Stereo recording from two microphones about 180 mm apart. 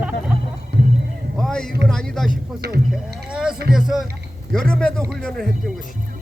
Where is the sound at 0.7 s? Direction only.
65° right (ahead or behind).